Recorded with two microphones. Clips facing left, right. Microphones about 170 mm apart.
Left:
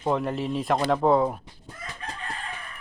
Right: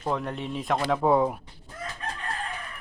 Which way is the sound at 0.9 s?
10° right (ahead or behind).